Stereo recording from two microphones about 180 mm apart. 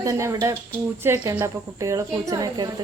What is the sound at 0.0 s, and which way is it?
A woman's voice, 15° right (ahead or behind).